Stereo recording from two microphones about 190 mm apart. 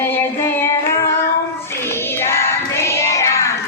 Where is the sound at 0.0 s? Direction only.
10° left (ahead or behind).